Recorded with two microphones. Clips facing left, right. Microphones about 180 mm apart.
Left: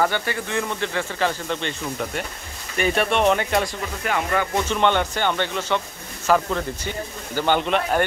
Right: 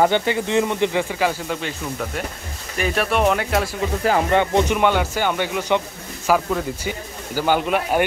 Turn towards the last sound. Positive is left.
turn(degrees=-5)  # may be behind; listen again after turning